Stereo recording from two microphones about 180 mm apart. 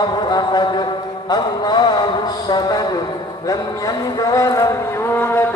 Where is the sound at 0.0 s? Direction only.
25° left (ahead or behind).